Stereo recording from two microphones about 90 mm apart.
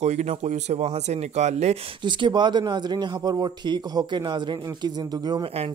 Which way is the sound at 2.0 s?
60° right (ahead or behind).